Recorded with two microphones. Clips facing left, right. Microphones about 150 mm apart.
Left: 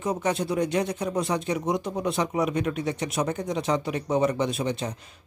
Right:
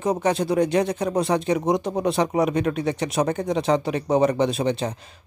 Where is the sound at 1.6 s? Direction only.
35° right (ahead or behind).